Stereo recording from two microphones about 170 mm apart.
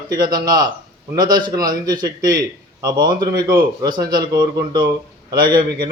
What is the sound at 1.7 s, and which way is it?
Speech, 25° right (ahead or behind).